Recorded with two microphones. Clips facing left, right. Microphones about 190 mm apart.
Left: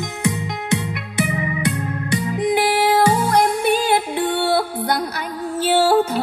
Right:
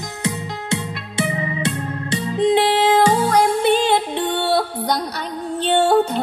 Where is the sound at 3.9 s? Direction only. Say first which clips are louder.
Even; 10° left (ahead or behind).